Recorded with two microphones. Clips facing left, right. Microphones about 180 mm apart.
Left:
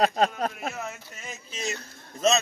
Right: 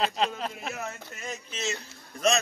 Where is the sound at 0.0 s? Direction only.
45° left (ahead or behind).